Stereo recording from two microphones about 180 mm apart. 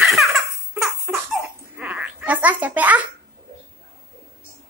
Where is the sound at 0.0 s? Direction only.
Centre (ahead or behind).